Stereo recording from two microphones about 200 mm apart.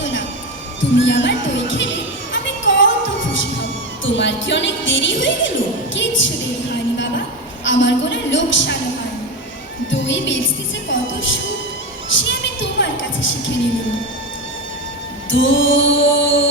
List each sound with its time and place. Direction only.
0.8 s music: 65° left (ahead or behind)
7.6 s a woman's voice: 65° left (ahead or behind)
9.9 s music: 65° left (ahead or behind)
12.1 s a woman's voice: 65° left (ahead or behind)
15.3 s music: 70° left (ahead or behind)